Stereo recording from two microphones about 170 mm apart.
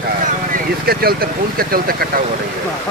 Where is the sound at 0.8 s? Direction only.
65° right (ahead or behind).